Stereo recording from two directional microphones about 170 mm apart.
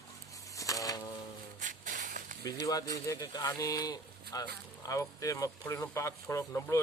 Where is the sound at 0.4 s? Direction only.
20° left (ahead or behind).